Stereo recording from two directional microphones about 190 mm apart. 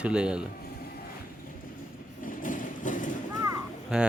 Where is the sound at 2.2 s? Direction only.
45° left (ahead or behind).